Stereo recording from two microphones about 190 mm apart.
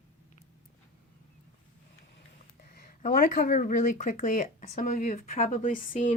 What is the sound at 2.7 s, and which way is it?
Speech, 45° left (ahead or behind).